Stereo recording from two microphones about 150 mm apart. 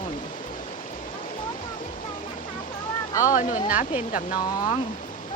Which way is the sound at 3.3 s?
60° left (ahead or behind).